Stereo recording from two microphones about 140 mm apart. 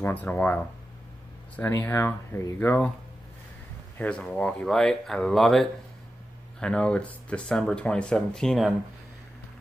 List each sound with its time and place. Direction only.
0.0 s speech: 10° left (ahead or behind)
1.6 s speech: 15° left (ahead or behind)
4.0 s speech: 5° left (ahead or behind)